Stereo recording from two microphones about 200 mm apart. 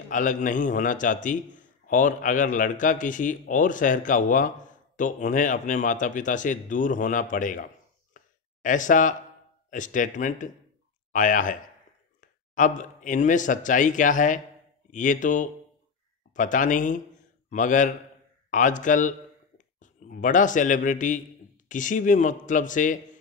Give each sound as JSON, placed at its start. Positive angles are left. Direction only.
{"t": 0.1, "sound": "a man's voice", "side_deg": 40}
{"t": 8.6, "sound": "a man's voice", "side_deg": 40}